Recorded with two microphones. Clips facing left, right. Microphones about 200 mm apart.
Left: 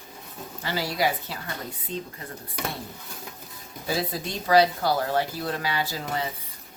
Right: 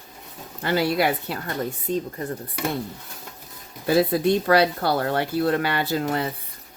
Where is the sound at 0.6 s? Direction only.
60° right (ahead or behind).